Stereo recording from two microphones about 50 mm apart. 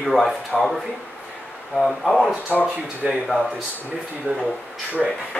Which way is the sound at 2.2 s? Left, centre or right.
Left.